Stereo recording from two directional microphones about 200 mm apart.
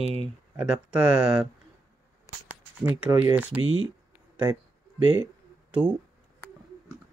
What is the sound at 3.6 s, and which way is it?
Speech, 75° right (ahead or behind).